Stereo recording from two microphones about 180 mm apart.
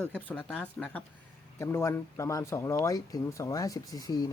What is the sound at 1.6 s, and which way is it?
Speech, 15° left (ahead or behind).